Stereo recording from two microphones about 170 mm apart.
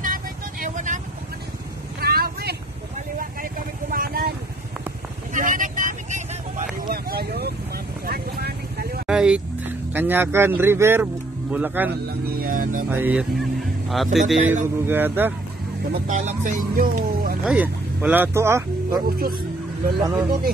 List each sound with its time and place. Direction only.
0.0 s vehicle: 50° right (ahead or behind)
2.0 s vehicle: 65° right (ahead or behind)
3.9 s vehicle: 60° right (ahead or behind)
5.3 s vehicle: 50° right (ahead or behind); by 9.0 s 65° right (ahead or behind)
9.0 s vehicle: 5° right (ahead or behind)
11.5 s speech: 10° right (ahead or behind)
12.4 s music: 55° right (ahead or behind)
12.9 s speech: 10° right (ahead or behind)
14.9 s speech: 10° right (ahead or behind)
15.9 s speech: 45° right (ahead or behind)
17.5 s speech: 10° right (ahead or behind)
19.0 s speech: 60° right (ahead or behind)
20.0 s speech: 20° right (ahead or behind)